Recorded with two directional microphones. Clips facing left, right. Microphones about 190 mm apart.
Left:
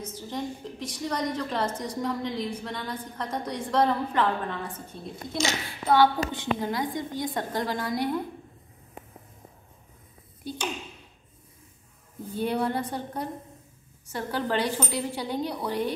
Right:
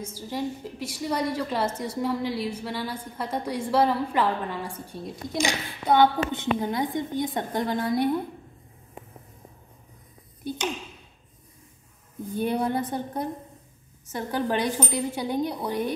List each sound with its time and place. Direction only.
0.0 s a woman's voice: 10° right (ahead or behind); by 8.1 s 25° right (ahead or behind)
12.3 s a woman's voice: 15° right (ahead or behind)